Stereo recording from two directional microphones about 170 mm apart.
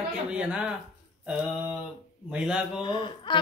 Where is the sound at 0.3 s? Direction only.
5° right (ahead or behind).